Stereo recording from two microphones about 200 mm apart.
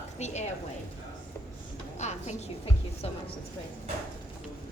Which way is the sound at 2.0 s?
35° left (ahead or behind).